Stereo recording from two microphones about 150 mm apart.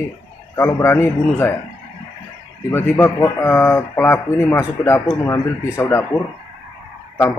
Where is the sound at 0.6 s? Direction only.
15° left (ahead or behind).